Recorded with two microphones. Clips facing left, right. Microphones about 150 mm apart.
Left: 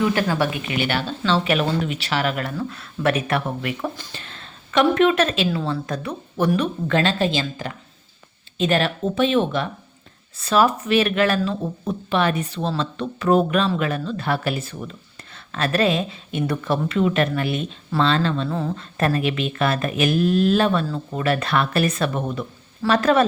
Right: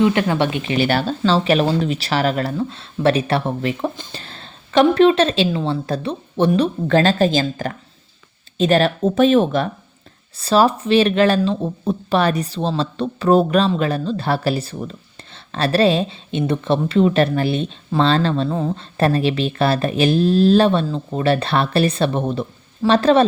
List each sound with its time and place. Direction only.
0.0 s speech: 20° right (ahead or behind)